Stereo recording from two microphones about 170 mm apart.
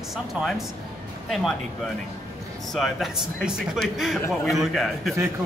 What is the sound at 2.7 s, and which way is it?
A man's voice, centre (ahead or behind).